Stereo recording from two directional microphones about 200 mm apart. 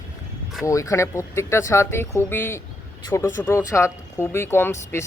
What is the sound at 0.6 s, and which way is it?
Speech, 15° left (ahead or behind).